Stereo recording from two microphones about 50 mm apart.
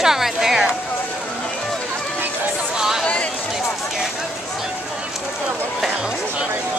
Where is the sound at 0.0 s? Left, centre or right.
Centre.